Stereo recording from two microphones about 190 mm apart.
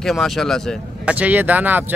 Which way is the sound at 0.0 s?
Centre (ahead or behind).